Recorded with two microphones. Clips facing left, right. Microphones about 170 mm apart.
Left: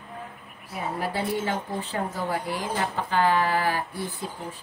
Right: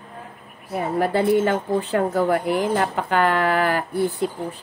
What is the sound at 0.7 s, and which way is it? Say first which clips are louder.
A woman's voice: right 8 dB; 60° right (ahead or behind).